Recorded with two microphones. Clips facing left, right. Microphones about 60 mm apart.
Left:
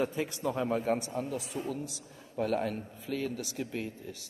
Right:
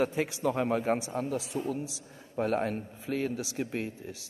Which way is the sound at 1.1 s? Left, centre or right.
Right.